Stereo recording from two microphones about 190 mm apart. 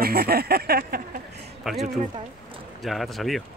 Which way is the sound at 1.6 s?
Centre (ahead or behind).